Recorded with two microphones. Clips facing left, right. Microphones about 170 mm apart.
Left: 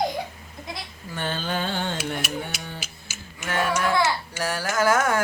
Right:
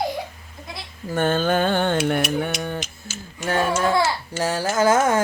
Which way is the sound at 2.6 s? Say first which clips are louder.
Right 10 dB; 55° right (ahead or behind).